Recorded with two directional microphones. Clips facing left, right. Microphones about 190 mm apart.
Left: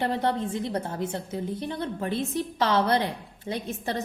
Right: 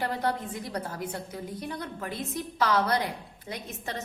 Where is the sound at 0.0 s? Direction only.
25° left (ahead or behind).